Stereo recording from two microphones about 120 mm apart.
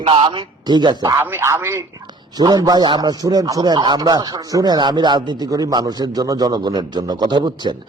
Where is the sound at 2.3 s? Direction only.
35° right (ahead or behind).